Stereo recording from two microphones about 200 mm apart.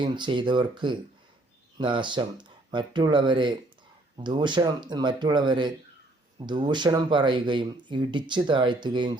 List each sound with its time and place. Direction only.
0.0 s speech: 25° right (ahead or behind)